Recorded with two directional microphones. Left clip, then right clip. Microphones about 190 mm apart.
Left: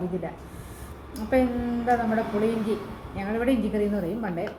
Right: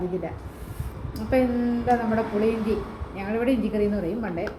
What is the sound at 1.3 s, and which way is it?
Speech, 15° right (ahead or behind).